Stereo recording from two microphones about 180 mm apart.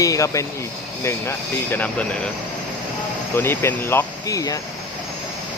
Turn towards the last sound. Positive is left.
turn(degrees=20)  # may be behind; listen again after turning